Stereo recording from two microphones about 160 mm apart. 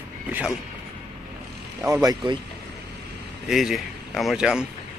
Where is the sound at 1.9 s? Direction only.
25° right (ahead or behind).